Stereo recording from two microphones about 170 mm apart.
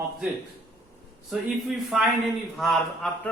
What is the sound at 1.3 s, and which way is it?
A man's voice, centre (ahead or behind).